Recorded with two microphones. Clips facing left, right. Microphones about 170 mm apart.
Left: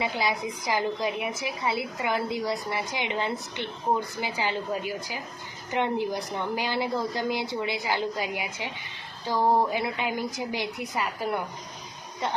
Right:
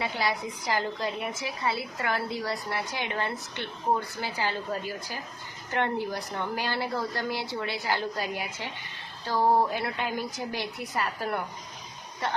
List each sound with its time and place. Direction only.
0.0 s a woman's voice: 15° left (ahead or behind)